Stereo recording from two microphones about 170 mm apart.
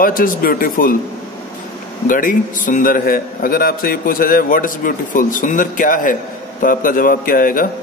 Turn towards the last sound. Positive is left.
turn(degrees=55)  # may be behind; listen again after turning